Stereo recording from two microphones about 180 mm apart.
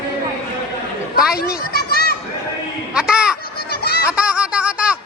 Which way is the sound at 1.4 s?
55° left (ahead or behind).